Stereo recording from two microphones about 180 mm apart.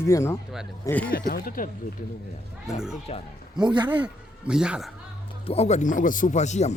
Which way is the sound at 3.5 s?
25° right (ahead or behind).